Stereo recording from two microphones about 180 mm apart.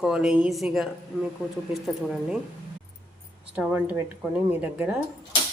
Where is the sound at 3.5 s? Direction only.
5° right (ahead or behind).